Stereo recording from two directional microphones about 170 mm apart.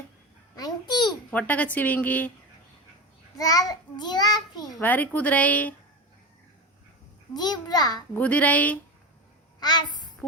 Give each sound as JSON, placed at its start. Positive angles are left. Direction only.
{"t": 0.5, "sound": "babbling", "side_deg": 25}
{"t": 1.3, "sound": "a woman's voice", "side_deg": 10}
{"t": 3.3, "sound": "a child's voice", "side_deg": 20}
{"t": 4.8, "sound": "a woman's voice", "side_deg": 10}
{"t": 7.3, "sound": "a child's voice", "side_deg": 25}
{"t": 8.2, "sound": "a woman's voice", "side_deg": 10}
{"t": 9.6, "sound": "a woman's voice", "side_deg": 25}